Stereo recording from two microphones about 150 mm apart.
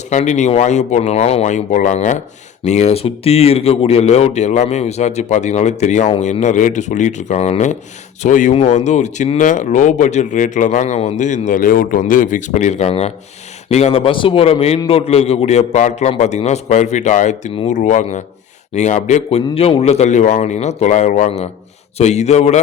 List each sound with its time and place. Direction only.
0.1 s a man's voice: 50° left (ahead or behind)